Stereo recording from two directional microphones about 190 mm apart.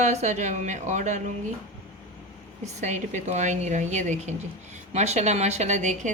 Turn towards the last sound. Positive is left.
turn(degrees=-40)  # may be behind; listen again after turning